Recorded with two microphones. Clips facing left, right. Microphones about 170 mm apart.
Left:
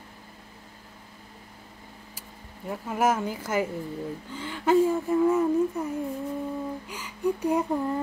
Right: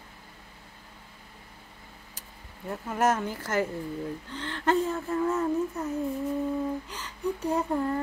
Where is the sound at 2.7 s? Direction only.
10° left (ahead or behind).